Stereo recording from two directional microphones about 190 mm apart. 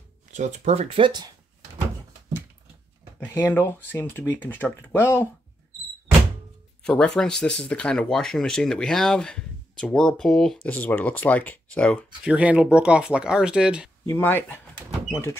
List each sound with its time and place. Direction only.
0.3 s speech: 40° right (ahead or behind)
3.3 s speech: 10° left (ahead or behind)
6.8 s speech: 5° left (ahead or behind)
12.2 s speech: 5° right (ahead or behind)
14.0 s speech: 10° left (ahead or behind)